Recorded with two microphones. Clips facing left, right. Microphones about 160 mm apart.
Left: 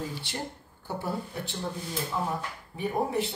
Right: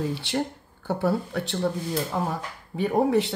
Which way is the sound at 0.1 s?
70° right (ahead or behind).